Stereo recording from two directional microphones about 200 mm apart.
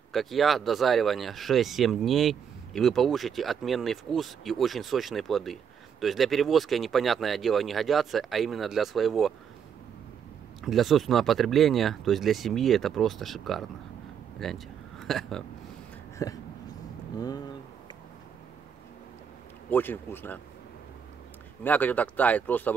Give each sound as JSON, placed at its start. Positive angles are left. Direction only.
{"t": 0.1, "sound": "speech", "side_deg": 0}
{"t": 10.6, "sound": "speech", "side_deg": 0}
{"t": 16.2, "sound": "speech", "side_deg": 15}
{"t": 19.7, "sound": "speech", "side_deg": 10}
{"t": 21.6, "sound": "speech", "side_deg": 10}